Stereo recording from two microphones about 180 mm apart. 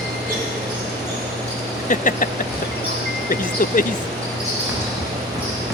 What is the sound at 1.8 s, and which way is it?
Speech, 50° left (ahead or behind).